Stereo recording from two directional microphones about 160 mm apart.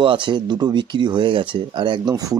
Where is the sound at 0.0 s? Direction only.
30° right (ahead or behind).